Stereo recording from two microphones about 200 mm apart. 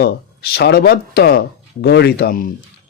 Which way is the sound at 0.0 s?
50° left (ahead or behind).